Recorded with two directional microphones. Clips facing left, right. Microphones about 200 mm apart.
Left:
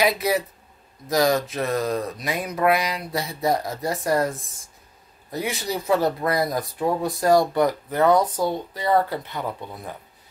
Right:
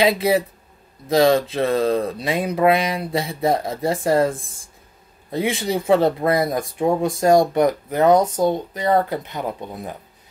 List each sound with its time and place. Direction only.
1.0 s speech: 30° right (ahead or behind)